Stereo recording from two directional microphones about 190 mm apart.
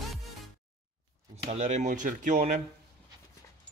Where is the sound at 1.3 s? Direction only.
35° right (ahead or behind).